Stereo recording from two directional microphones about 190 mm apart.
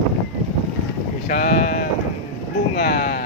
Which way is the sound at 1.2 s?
50° left (ahead or behind).